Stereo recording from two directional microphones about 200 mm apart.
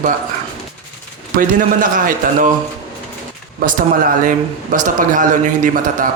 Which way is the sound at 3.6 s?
45° right (ahead or behind).